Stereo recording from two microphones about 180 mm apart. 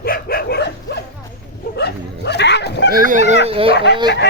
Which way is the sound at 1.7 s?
65° left (ahead or behind).